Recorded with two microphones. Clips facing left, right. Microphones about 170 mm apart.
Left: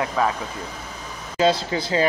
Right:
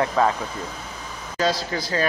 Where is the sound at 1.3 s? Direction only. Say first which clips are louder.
Left 4 dB; 20° left (ahead or behind).